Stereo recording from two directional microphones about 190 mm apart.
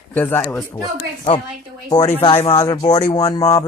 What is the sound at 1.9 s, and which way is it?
Speech, 20° left (ahead or behind).